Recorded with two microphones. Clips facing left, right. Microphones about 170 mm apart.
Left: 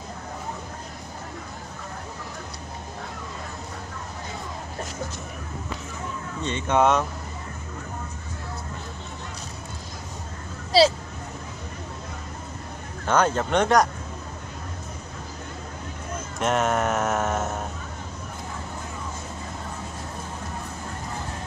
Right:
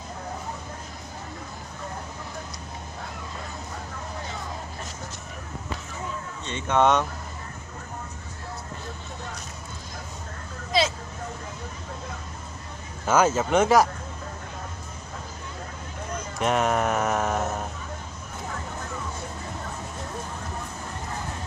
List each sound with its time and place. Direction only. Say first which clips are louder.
6.8 s speech: even; 5° left (ahead or behind)
10.7 s speech: left 6 dB; 35° left (ahead or behind)
13.0 s speech: right 1 dB; 5° right (ahead or behind)
16.3 s speech: even; centre (ahead or behind)